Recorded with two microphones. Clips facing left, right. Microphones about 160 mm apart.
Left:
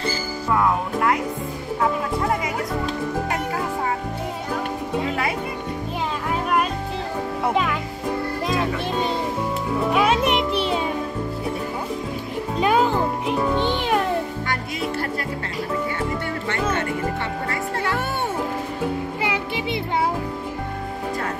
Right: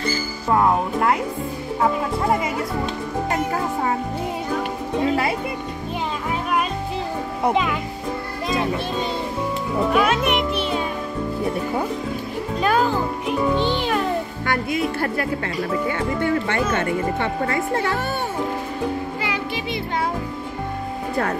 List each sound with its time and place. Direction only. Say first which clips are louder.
0.5 s speech: right 3 dB; 30° right (ahead or behind)
10.0 s music: left 1 dB; 30° left (ahead or behind)
12.5 s music: left 1 dB; 20° left (ahead or behind)
14.4 s music: right 4 dB; 50° right (ahead or behind)
19.2 s music: left 1 dB; 20° left (ahead or behind)